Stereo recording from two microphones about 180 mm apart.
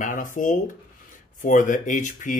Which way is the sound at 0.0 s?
45° left (ahead or behind).